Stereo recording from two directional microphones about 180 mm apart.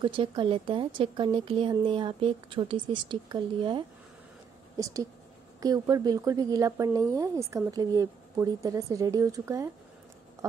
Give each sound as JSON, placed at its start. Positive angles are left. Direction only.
{"t": 0.0, "sound": "speech", "side_deg": -30}